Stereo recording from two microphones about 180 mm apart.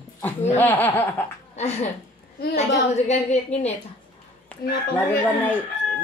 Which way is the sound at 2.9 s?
40° left (ahead or behind).